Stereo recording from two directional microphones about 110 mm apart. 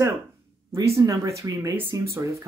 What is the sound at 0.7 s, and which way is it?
Speech, 30° right (ahead or behind).